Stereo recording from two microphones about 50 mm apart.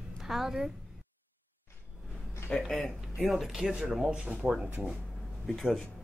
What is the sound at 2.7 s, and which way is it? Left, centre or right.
Speech, centre.